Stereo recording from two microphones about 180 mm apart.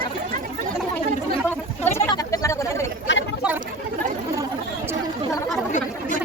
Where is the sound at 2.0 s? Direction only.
15° left (ahead or behind).